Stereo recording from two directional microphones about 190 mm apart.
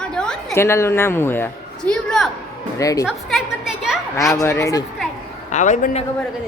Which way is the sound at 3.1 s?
5° right (ahead or behind).